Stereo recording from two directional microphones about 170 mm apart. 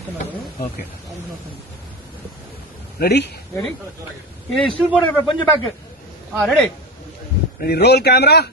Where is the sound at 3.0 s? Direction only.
75° left (ahead or behind).